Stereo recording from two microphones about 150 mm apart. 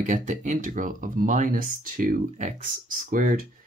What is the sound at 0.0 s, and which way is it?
Speech, 55° right (ahead or behind).